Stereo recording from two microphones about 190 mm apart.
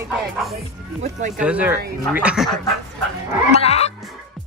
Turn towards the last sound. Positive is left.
turn(degrees=35)  # may be behind; listen again after turning